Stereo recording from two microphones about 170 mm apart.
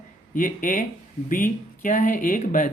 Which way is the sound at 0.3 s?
50° left (ahead or behind).